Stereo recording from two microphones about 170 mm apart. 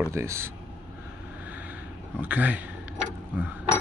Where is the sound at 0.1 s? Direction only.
15° right (ahead or behind).